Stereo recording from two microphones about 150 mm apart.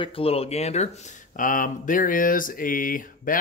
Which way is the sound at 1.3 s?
65° left (ahead or behind).